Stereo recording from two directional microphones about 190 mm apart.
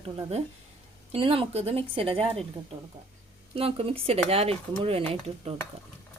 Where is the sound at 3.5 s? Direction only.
30° right (ahead or behind).